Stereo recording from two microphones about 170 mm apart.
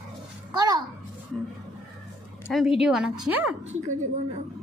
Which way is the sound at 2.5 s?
5° right (ahead or behind).